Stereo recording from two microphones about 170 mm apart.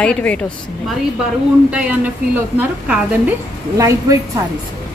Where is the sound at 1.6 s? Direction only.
5° right (ahead or behind).